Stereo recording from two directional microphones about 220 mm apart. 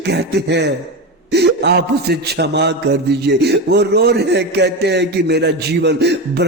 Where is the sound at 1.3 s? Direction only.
50° right (ahead or behind).